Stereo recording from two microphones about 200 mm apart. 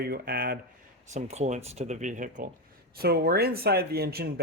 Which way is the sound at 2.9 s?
50° right (ahead or behind).